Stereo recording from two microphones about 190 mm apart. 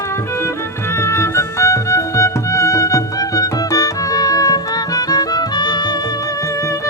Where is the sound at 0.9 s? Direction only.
15° left (ahead or behind).